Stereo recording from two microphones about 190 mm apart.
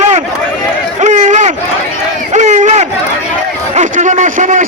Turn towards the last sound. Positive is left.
turn(degrees=-40)  # may be behind; listen again after turning